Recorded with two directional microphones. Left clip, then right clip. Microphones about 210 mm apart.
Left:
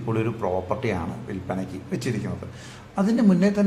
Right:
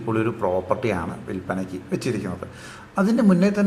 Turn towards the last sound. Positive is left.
turn(degrees=-10)  # may be behind; listen again after turning